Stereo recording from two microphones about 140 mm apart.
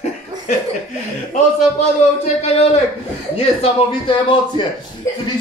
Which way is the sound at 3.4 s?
40° left (ahead or behind).